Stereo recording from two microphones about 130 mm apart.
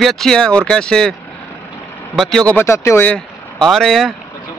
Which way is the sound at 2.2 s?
5° left (ahead or behind).